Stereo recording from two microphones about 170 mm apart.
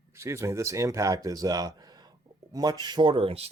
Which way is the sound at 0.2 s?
15° right (ahead or behind).